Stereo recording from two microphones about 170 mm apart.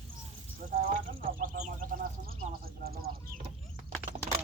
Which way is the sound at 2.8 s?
65° right (ahead or behind).